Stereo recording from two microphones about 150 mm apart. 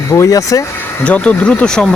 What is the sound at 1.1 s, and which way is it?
Speech, 10° left (ahead or behind).